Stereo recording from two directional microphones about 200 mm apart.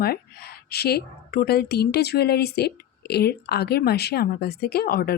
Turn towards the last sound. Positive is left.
turn(degrees=50)  # may be behind; listen again after turning